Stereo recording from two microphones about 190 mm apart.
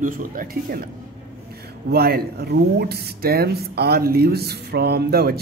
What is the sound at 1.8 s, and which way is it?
Speech, 55° right (ahead or behind).